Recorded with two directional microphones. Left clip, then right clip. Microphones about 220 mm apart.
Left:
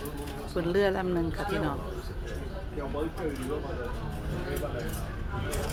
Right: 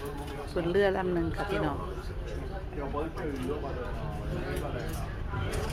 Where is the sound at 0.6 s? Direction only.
5° left (ahead or behind).